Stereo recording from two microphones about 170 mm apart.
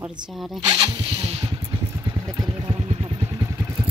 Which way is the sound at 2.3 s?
25° right (ahead or behind).